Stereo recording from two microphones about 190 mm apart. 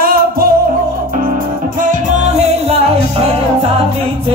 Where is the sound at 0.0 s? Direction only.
50° right (ahead or behind).